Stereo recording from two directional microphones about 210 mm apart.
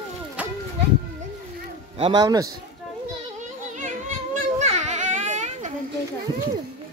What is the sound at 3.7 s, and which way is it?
Children playing, 35° right (ahead or behind).